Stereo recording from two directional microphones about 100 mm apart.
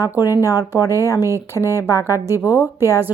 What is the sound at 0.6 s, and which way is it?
Speech, 40° left (ahead or behind).